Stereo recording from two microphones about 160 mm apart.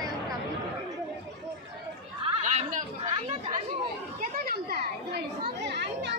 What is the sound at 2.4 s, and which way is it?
Chatter, 50° right (ahead or behind).